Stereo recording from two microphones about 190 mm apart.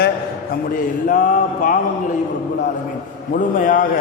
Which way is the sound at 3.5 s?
45° left (ahead or behind).